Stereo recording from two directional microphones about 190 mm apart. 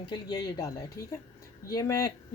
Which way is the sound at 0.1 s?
20° left (ahead or behind).